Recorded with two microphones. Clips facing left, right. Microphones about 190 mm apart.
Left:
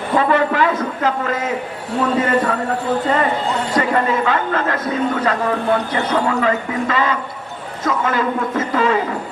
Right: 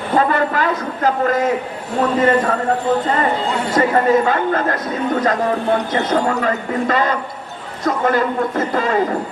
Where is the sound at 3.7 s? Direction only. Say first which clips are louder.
Right 4 dB; 40° right (ahead or behind).